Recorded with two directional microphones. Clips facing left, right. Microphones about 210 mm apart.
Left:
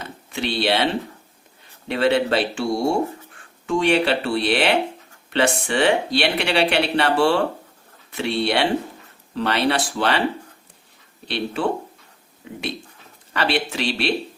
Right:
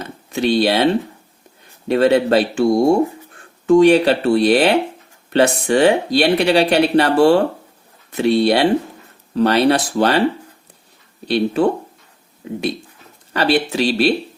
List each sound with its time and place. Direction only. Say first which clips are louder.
0.3 s speech: right 6 dB; 40° right (ahead or behind)
1.9 s a man's voice: right 6 dB; 40° right (ahead or behind)
11.3 s speech: right 8 dB; 40° right (ahead or behind)
13.3 s speech: right 6 dB; 40° right (ahead or behind)